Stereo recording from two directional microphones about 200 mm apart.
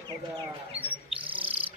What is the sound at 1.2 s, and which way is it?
Owl, 25° right (ahead or behind).